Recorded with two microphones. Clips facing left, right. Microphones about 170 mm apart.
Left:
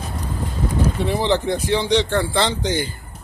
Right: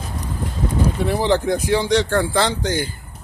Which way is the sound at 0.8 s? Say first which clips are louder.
Right 1 dB; 10° right (ahead or behind).